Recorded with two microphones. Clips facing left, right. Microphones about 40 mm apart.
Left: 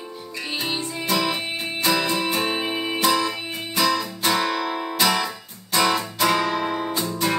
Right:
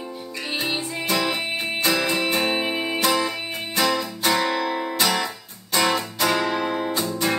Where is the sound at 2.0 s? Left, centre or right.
Centre.